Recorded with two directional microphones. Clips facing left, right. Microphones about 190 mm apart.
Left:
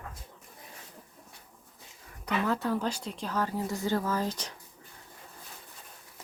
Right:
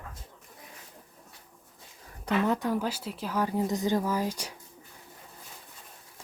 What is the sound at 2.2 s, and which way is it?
Speech, 20° right (ahead or behind).